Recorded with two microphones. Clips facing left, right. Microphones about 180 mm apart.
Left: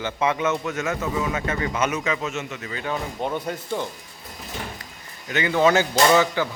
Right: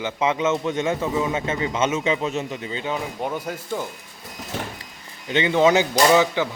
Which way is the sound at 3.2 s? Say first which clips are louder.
Left 1 dB; 5° right (ahead or behind).